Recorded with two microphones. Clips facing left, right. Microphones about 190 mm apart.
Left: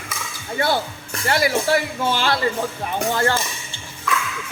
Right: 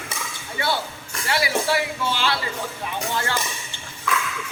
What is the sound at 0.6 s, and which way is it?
Speech, 45° left (ahead or behind).